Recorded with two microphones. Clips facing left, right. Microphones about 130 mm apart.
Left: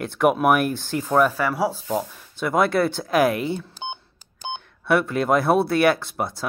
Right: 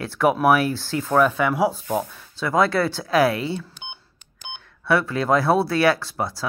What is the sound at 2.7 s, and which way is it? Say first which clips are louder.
Speech: left 1 dB; 20° left (ahead or behind).